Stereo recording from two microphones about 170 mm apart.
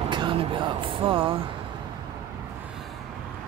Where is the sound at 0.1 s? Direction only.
30° right (ahead or behind).